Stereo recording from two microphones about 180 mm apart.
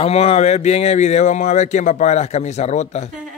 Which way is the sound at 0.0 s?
35° left (ahead or behind).